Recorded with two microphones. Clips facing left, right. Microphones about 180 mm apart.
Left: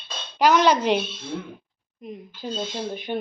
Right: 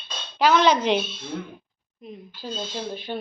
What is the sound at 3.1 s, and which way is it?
Speech, 20° left (ahead or behind).